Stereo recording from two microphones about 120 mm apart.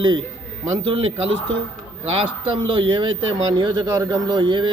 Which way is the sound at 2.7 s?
45° right (ahead or behind).